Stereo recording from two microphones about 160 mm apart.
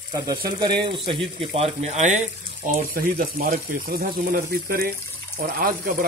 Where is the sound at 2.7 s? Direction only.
60° right (ahead or behind).